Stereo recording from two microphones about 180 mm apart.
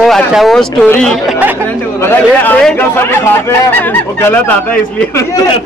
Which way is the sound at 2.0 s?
10° left (ahead or behind).